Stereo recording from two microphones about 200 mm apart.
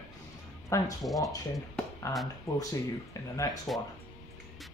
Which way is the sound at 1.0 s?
Centre (ahead or behind).